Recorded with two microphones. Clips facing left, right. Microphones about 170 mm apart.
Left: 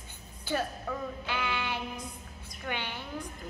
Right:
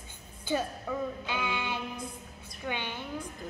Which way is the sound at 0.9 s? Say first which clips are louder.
Right 6 dB; 10° right (ahead or behind).